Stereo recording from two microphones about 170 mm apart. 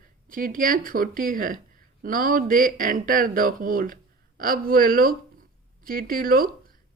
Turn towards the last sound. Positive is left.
turn(degrees=-60)  # may be behind; listen again after turning